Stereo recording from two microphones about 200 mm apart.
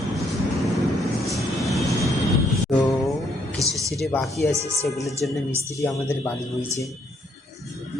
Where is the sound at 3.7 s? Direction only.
15° right (ahead or behind).